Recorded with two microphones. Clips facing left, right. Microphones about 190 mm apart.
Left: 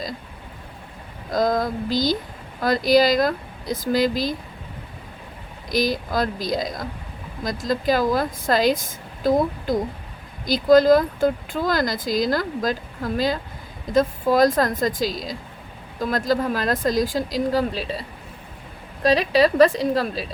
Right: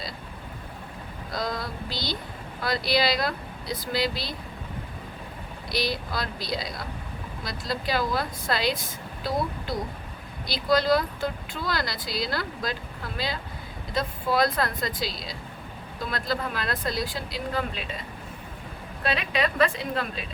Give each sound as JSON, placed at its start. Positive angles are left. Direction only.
{"t": 1.3, "sound": "speech", "side_deg": 45}
{"t": 5.6, "sound": "speech", "side_deg": 45}
{"t": 10.4, "sound": "speech", "side_deg": 45}
{"t": 19.0, "sound": "a woman's voice", "side_deg": 35}